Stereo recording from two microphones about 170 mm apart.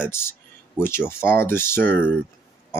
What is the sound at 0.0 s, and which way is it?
Speech, 15° left (ahead or behind).